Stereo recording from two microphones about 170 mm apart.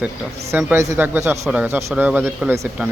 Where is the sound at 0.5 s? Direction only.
15° right (ahead or behind).